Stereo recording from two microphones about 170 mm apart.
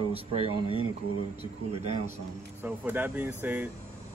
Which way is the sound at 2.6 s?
10° right (ahead or behind).